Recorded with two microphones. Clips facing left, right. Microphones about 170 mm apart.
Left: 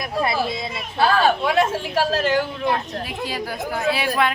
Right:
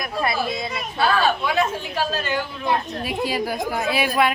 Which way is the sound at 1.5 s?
75° left (ahead or behind).